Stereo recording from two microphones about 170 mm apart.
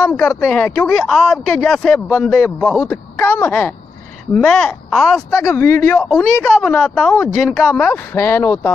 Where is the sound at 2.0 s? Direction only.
15° left (ahead or behind).